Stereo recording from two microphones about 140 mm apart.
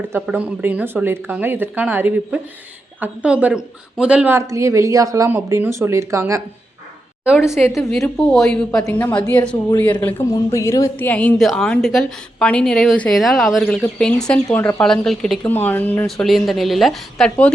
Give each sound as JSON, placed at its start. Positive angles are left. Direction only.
{"t": 0.1, "sound": "speech", "side_deg": -10}
{"t": 4.4, "sound": "speech", "side_deg": -20}
{"t": 7.3, "sound": "a woman's voice", "side_deg": -5}
{"t": 15.4, "sound": "a woman's voice", "side_deg": 15}
{"t": 16.0, "sound": "a woman's voice", "side_deg": 0}